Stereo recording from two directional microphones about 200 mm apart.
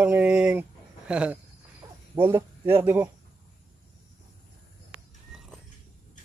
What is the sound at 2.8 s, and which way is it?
Speech, 10° right (ahead or behind).